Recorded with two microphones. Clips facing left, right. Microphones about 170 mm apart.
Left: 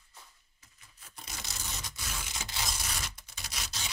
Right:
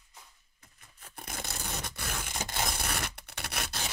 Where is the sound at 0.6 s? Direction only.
55° right (ahead or behind).